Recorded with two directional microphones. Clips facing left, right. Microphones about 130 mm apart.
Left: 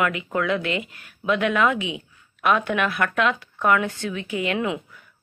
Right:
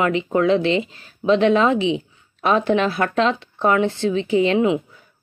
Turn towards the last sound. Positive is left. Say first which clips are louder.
# right 7 dB
turn(degrees=-25)  # may be behind; listen again after turning